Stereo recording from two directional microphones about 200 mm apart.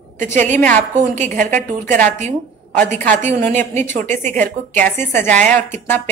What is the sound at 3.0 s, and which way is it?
A woman's voice, 10° left (ahead or behind).